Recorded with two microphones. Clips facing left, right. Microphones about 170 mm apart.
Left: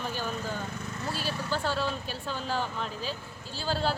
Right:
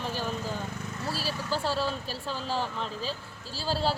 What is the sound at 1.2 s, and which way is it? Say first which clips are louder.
Speech: even; 5° right (ahead or behind).